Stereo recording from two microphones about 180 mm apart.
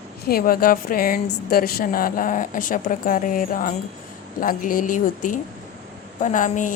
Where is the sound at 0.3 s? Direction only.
55° left (ahead or behind).